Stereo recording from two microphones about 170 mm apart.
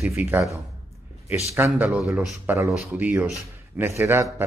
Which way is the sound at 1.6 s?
10° right (ahead or behind).